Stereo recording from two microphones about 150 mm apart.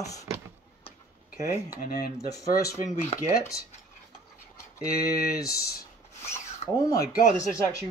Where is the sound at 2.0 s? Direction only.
25° left (ahead or behind).